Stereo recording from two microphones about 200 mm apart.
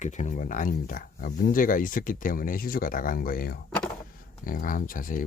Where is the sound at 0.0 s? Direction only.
35° left (ahead or behind).